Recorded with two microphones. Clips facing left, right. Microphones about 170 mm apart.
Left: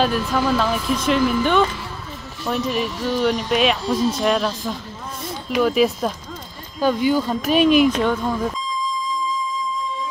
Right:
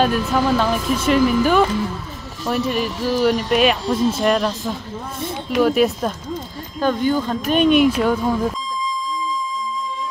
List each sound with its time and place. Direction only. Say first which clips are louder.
0.0 s speech: right 2 dB; centre (ahead or behind)